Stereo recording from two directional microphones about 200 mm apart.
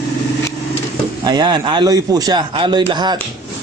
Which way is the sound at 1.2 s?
20° right (ahead or behind).